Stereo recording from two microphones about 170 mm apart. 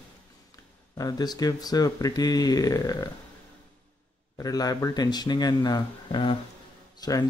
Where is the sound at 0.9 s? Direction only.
20° left (ahead or behind).